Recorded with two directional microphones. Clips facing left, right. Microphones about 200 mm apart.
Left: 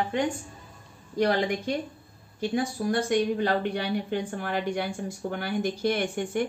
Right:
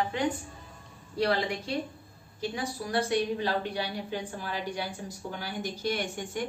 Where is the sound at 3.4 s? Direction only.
60° left (ahead or behind).